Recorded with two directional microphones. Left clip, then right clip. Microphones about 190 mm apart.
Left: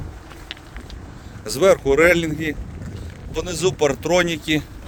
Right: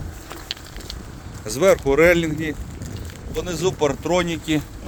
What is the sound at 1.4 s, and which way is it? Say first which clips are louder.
Speech: left 1 dB; 35° left (ahead or behind).